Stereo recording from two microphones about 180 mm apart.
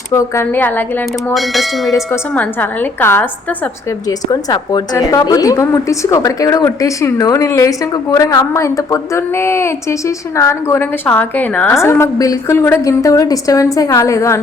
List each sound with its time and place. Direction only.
0.1 s a woman's voice: 15° left (ahead or behind)
1.3 s a woman's voice: centre (ahead or behind)
4.3 s a woman's voice: 20° left (ahead or behind)